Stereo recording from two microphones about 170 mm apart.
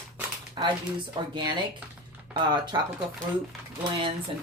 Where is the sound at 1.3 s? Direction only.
25° right (ahead or behind).